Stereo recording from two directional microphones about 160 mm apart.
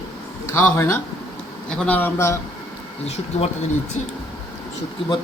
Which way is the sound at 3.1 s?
40° left (ahead or behind).